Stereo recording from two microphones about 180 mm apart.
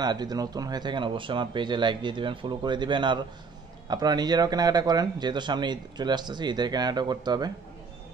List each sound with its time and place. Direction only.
0.0 s speech: 20° right (ahead or behind)